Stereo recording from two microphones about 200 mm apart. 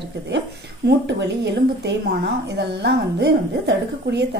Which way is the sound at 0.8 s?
60° right (ahead or behind).